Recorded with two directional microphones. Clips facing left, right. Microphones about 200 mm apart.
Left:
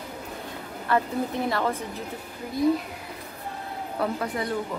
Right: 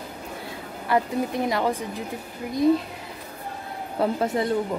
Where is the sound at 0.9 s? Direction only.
10° right (ahead or behind).